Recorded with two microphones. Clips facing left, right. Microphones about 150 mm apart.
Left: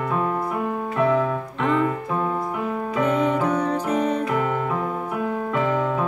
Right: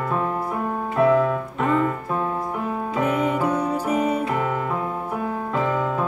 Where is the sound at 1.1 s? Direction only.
5° right (ahead or behind).